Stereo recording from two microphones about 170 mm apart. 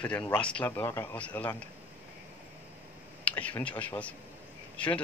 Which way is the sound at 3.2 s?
10° left (ahead or behind).